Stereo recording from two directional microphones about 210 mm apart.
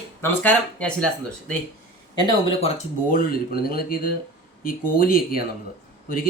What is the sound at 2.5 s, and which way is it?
Speech, 30° left (ahead or behind).